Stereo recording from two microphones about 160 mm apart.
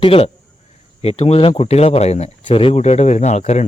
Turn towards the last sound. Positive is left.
turn(degrees=45)  # may be behind; listen again after turning